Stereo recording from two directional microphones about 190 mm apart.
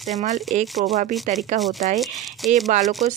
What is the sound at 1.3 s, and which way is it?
Speech, 40° right (ahead or behind).